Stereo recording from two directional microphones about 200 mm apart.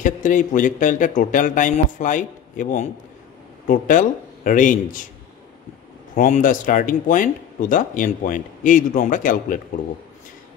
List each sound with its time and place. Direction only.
0.0 s speech: 40° left (ahead or behind)
6.1 s speech: 40° left (ahead or behind)